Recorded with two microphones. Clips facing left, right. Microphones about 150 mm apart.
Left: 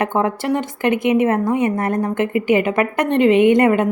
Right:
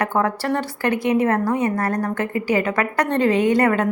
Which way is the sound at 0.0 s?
25° left (ahead or behind).